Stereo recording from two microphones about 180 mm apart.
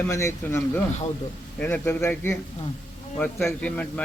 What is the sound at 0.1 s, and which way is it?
A man's voice, 15° left (ahead or behind).